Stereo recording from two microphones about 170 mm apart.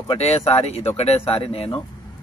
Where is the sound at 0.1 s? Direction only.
40° left (ahead or behind).